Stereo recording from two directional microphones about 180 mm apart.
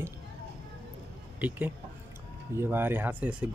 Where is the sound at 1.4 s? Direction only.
5° right (ahead or behind).